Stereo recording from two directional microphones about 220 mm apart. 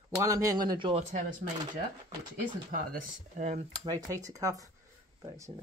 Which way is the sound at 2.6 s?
35° right (ahead or behind).